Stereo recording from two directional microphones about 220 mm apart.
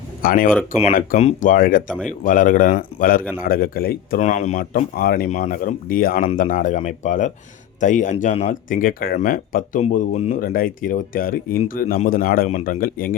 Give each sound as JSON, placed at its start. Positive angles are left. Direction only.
{"t": 0.2, "sound": "speech", "side_deg": 40}